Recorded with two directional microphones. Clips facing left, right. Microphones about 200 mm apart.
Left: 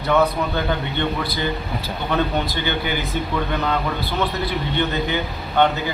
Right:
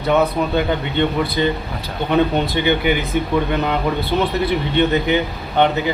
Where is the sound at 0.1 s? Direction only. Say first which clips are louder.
Right 2 dB; 20° right (ahead or behind).